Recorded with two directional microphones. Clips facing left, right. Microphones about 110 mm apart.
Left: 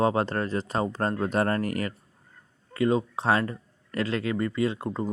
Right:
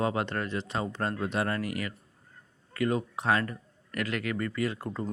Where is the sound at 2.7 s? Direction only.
25° left (ahead or behind).